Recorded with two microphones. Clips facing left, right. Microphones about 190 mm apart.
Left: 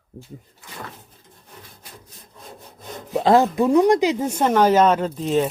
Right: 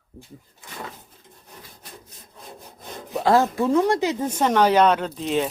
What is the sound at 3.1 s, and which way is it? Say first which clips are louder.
Speech: left 3 dB; 20° left (ahead or behind).